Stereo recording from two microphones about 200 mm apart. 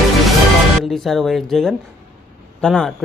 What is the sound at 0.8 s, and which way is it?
Speech, centre (ahead or behind).